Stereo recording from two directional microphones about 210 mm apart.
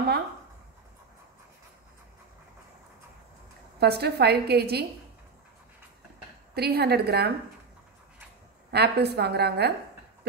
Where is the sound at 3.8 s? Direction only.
50° right (ahead or behind).